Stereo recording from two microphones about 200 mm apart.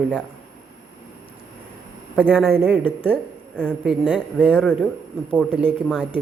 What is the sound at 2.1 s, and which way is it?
A man's voice, 10° right (ahead or behind).